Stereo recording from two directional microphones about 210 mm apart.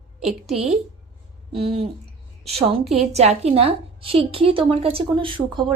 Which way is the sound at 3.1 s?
30° right (ahead or behind).